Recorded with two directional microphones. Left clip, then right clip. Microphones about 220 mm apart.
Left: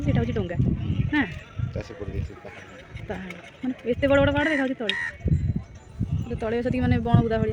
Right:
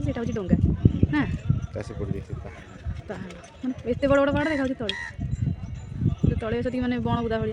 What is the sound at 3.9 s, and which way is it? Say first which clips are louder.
Speech: left 1 dB; 5° right (ahead or behind).